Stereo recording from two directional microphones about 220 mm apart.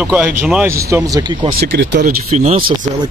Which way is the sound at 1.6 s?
55° right (ahead or behind).